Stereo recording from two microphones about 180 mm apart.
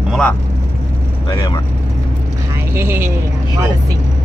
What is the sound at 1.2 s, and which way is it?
Speech, 25° left (ahead or behind).